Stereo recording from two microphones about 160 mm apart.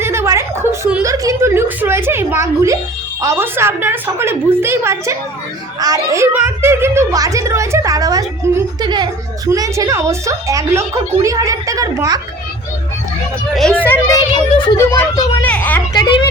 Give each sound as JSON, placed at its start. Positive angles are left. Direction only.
{"t": 0.0, "sound": "a sound", "side_deg": -15}
{"t": 1.0, "sound": "a woman's voice", "side_deg": -20}
{"t": 13.6, "sound": "a woman's voice", "side_deg": 5}
{"t": 16.0, "sound": "a woman's voice", "side_deg": 25}